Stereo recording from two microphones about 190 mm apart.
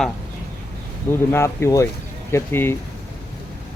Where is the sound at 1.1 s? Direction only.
10° left (ahead or behind).